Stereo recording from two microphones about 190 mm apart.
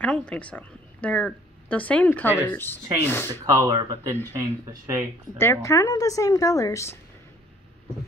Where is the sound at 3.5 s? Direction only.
20° right (ahead or behind).